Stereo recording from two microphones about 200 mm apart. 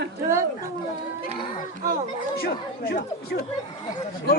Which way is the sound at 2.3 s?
50° left (ahead or behind).